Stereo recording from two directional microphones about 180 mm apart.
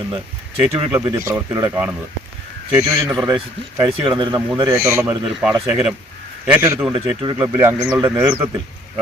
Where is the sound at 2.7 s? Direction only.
15° right (ahead or behind).